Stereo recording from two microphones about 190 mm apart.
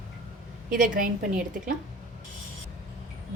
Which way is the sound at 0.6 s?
45° right (ahead or behind).